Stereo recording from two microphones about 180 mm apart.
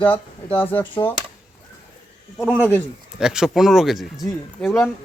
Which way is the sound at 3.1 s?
5° right (ahead or behind).